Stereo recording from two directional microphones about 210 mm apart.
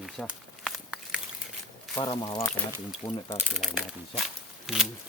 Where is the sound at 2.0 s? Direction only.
20° left (ahead or behind).